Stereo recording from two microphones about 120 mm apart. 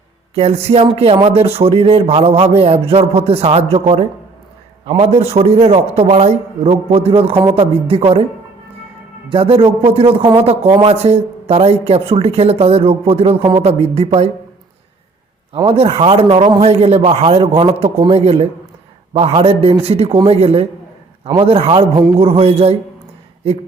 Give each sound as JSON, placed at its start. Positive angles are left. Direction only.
{"t": 0.3, "sound": "a man's voice", "side_deg": -60}
{"t": 4.9, "sound": "a man's voice", "side_deg": -60}
{"t": 9.3, "sound": "a man's voice", "side_deg": -50}
{"t": 15.5, "sound": "a man's voice", "side_deg": -50}